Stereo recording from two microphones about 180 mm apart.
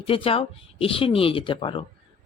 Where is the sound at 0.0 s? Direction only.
30° left (ahead or behind).